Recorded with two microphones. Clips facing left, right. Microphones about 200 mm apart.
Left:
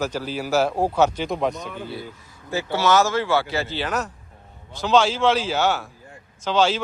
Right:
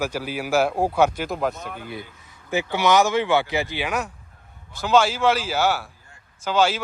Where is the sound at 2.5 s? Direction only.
15° right (ahead or behind).